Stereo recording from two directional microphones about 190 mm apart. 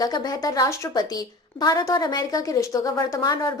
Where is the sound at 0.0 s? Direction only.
20° left (ahead or behind).